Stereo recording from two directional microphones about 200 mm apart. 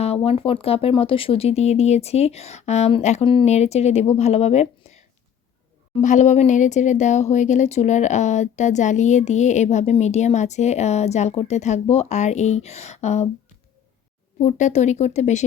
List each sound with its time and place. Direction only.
0.0 s speech: 30° left (ahead or behind)
14.3 s speech: 35° left (ahead or behind)